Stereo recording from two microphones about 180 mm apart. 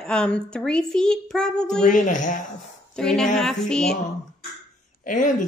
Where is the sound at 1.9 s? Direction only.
45° left (ahead or behind).